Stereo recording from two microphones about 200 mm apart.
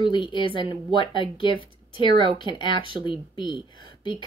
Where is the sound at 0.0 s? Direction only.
25° left (ahead or behind).